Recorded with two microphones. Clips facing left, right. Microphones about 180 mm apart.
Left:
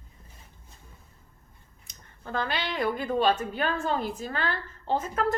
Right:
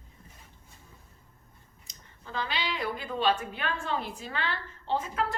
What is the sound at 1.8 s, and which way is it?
Speech, 55° left (ahead or behind).